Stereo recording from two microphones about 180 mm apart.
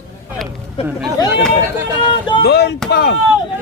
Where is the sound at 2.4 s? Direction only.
65° left (ahead or behind).